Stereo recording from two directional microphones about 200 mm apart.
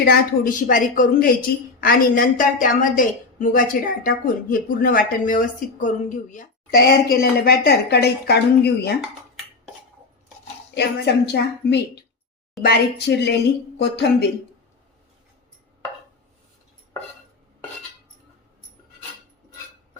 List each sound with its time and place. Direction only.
0.0 s a woman's voice: 45° left (ahead or behind)
10.8 s a woman's voice: 55° left (ahead or behind)